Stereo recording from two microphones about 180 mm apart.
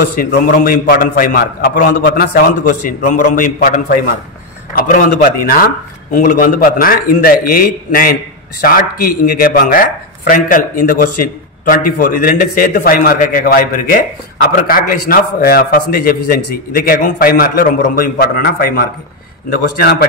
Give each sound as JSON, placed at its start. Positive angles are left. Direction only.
{"t": 0.0, "sound": "a man's voice", "side_deg": 55}